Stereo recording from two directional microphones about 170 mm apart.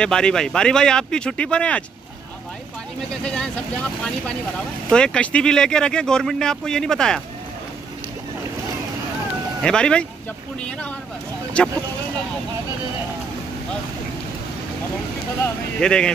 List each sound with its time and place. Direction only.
0.0 s speech: 5° left (ahead or behind)
4.9 s speech: 5° left (ahead or behind)
9.6 s speech: 5° left (ahead or behind)
11.6 s speech: 5° left (ahead or behind)
15.4 s speech: 5° left (ahead or behind)